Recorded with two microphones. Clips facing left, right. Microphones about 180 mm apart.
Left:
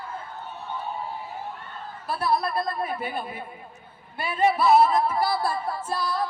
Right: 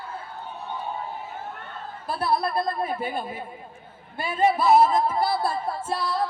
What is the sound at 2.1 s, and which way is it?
A woman's voice, 30° right (ahead or behind).